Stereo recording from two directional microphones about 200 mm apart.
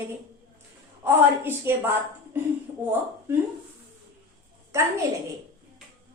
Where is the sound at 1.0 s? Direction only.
10° right (ahead or behind).